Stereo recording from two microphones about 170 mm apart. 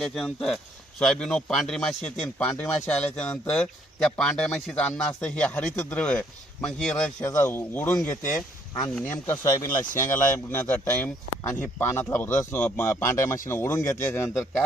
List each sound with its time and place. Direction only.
0.0 s a man's voice: centre (ahead or behind)